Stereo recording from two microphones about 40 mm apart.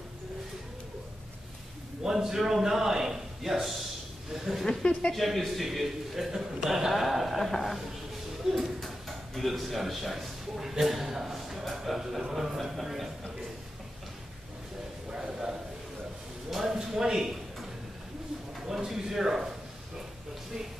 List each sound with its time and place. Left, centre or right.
2.0 s a man's voice: centre
4.6 s a woman's voice: left
5.1 s a man's voice: centre
8.7 s a sound: centre
9.6 s a man's voice: centre
11.7 s a sound: centre
12.3 s a man's voice: centre
15.0 s a sound: centre
16.8 s speech: centre
18.6 s speech: centre